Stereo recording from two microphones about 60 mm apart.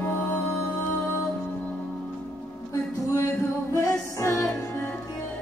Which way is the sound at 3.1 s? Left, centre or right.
Left.